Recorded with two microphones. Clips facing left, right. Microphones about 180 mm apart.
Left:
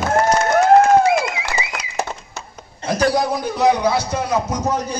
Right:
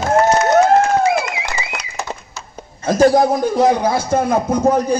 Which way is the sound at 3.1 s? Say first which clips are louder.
Right 5 dB; 50° right (ahead or behind).